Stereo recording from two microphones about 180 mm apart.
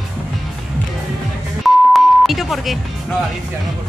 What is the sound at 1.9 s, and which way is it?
Beep, centre (ahead or behind).